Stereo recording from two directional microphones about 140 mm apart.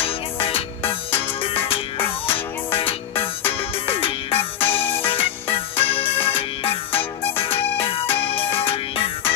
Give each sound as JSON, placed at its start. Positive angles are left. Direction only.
{"t": 0.0, "sound": "music", "side_deg": 40}
{"t": 2.0, "sound": "music", "side_deg": 15}
{"t": 2.3, "sound": "music", "side_deg": 40}
{"t": 4.6, "sound": "music", "side_deg": 15}
{"t": 5.0, "sound": "music", "side_deg": 40}